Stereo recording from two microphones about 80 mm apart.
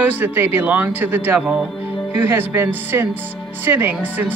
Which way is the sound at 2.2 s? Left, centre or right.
Right.